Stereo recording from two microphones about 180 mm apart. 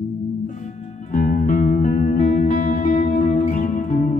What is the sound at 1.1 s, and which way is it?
Music, 50° left (ahead or behind).